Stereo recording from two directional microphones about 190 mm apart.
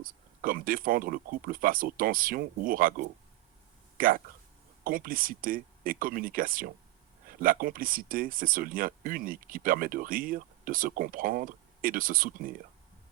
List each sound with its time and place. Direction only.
0.0 s speech: 45° right (ahead or behind)